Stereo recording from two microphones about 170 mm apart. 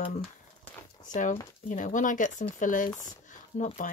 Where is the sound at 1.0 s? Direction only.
50° left (ahead or behind).